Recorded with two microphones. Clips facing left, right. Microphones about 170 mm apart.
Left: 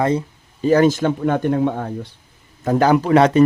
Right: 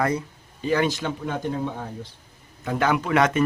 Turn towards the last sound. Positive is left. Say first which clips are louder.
# left 7 dB
turn(degrees=35)  # may be behind; listen again after turning